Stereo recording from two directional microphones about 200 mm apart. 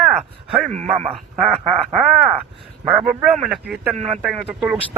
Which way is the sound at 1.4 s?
10° right (ahead or behind).